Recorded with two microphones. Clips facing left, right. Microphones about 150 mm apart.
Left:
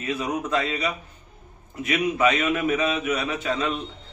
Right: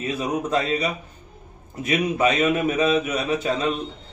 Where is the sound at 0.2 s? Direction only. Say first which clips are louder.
Right 3 dB; 35° right (ahead or behind).